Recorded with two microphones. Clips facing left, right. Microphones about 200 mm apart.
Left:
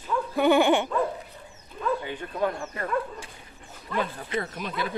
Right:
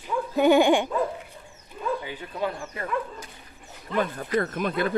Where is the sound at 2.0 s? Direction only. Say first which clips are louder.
Left 2 dB; 5° right (ahead or behind).